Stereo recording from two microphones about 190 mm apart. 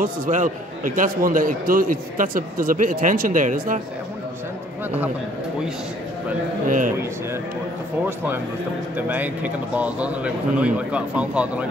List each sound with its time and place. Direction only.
0.0 s a man's voice: 45° right (ahead or behind)
8.9 s a man's voice: 10° right (ahead or behind)